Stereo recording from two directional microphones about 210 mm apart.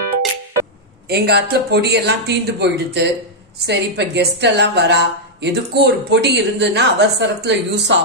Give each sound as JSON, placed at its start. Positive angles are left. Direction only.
{"t": 1.0, "sound": "a woman's voice", "side_deg": -50}